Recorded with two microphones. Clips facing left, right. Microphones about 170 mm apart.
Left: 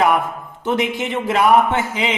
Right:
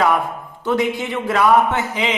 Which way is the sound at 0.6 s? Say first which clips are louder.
Right 1 dB; 20° left (ahead or behind).